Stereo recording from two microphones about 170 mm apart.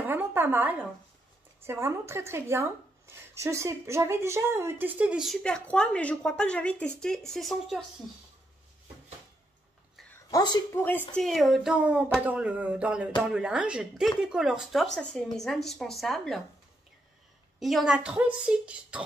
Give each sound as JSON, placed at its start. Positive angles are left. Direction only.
{"t": 0.0, "sound": "a sound", "side_deg": -10}
{"t": 1.6, "sound": "speech", "side_deg": -15}
{"t": 10.3, "sound": "a woman's voice", "side_deg": 20}
{"t": 11.1, "sound": "a woman's voice", "side_deg": 0}
{"t": 17.6, "sound": "speech", "side_deg": 0}